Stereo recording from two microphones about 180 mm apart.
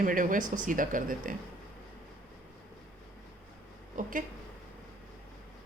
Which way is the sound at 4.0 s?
45° right (ahead or behind).